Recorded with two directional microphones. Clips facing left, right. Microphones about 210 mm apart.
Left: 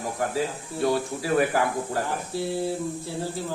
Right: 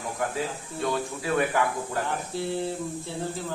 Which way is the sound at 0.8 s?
35° left (ahead or behind).